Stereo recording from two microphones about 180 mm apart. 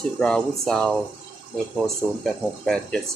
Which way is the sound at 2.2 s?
5° left (ahead or behind).